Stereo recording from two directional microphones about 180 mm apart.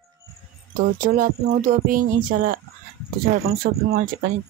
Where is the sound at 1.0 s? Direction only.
45° right (ahead or behind).